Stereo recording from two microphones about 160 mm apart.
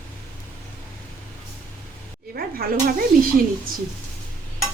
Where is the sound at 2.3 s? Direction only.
70° right (ahead or behind).